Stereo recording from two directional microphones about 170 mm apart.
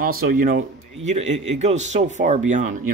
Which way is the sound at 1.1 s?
40° right (ahead or behind).